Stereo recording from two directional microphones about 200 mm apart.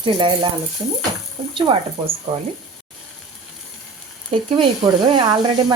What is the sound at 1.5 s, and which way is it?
Speech, 25° right (ahead or behind).